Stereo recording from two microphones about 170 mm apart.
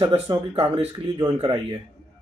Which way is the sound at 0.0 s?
30° right (ahead or behind).